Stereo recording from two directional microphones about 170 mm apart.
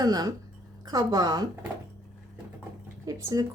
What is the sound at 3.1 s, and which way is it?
Speech, 20° right (ahead or behind).